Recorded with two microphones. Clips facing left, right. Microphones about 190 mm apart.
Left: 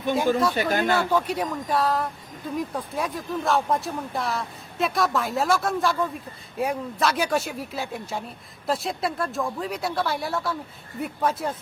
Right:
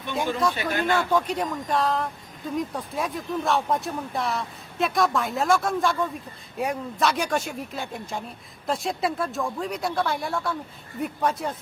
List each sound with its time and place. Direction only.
0.5 s speech: 40° left (ahead or behind)
0.9 s speech: 5° left (ahead or behind)